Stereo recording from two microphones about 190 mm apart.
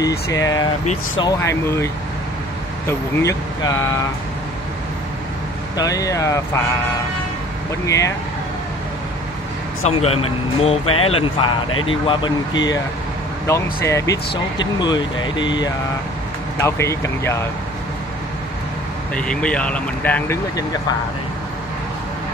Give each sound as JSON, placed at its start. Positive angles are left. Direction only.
{"t": 0.3, "sound": "speech", "side_deg": 20}
{"t": 2.9, "sound": "speech", "side_deg": 15}
{"t": 5.8, "sound": "speech", "side_deg": 20}
{"t": 7.8, "sound": "speech", "side_deg": 15}
{"t": 9.8, "sound": "speech", "side_deg": 30}
{"t": 16.5, "sound": "speech", "side_deg": 15}
{"t": 19.1, "sound": "speech", "side_deg": 5}